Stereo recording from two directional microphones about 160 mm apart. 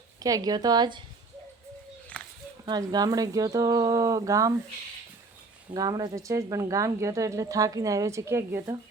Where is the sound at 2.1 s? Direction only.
10° left (ahead or behind).